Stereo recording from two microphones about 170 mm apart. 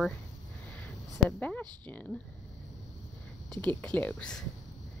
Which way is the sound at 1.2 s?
10° left (ahead or behind).